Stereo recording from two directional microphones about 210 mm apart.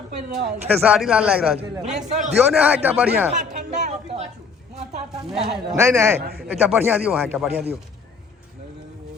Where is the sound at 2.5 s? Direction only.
5° right (ahead or behind).